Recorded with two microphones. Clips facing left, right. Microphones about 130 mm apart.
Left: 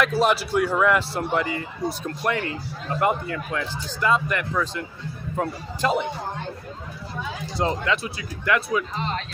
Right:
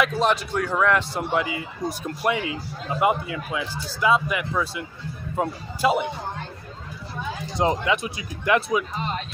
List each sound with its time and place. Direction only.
0.0 s a man's voice: 5° left (ahead or behind)
7.5 s speech: 20° right (ahead or behind)